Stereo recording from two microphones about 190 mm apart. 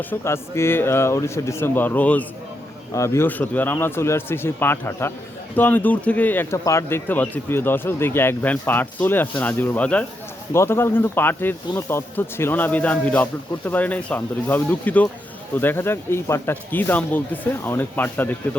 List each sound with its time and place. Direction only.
0.0 s speech: 10° left (ahead or behind)